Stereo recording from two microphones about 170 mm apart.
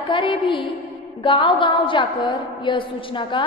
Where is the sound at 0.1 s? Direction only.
30° left (ahead or behind).